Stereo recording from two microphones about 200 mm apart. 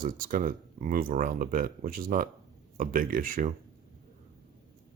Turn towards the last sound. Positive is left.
turn(degrees=-40)  # may be behind; listen again after turning